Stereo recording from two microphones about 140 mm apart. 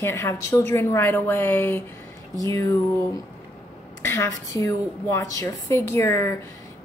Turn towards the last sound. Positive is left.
turn(degrees=20)  # may be behind; listen again after turning